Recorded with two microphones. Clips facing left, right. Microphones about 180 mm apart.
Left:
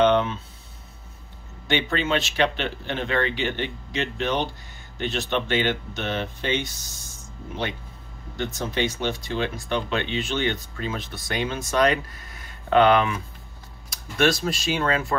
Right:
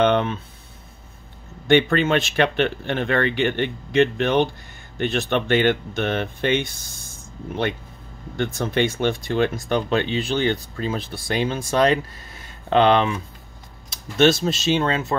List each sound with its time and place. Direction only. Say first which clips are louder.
0.0 s a sound: right 1 dB; 55° right (ahead or behind)
1.7 s speech: right 7 dB; 55° right (ahead or behind)
8.4 s speech: right 5 dB; 55° right (ahead or behind); by 15.1 s 25° right (ahead or behind)